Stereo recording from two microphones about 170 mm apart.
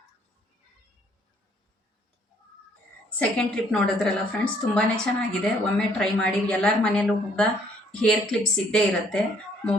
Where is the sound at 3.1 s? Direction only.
5° left (ahead or behind).